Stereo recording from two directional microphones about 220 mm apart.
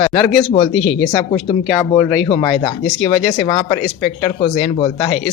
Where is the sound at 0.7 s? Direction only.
Centre (ahead or behind).